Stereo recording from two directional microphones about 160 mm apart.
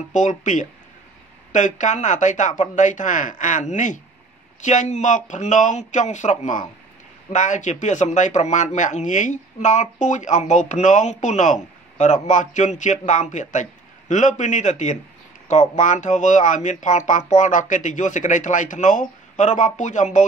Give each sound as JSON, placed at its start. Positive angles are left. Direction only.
{"t": 0.1, "sound": "speech", "side_deg": 50}